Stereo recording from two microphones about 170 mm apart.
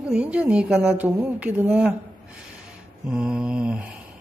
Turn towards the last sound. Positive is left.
turn(degrees=-5)  # may be behind; listen again after turning